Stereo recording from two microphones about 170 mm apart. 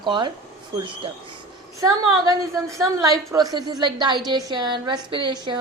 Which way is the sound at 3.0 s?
20° right (ahead or behind).